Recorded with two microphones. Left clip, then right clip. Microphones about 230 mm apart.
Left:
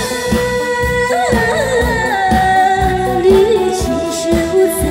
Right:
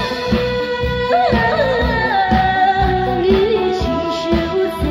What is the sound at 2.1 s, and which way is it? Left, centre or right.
Music, left.